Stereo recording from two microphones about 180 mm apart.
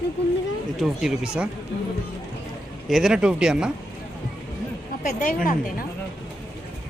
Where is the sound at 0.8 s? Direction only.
5° right (ahead or behind).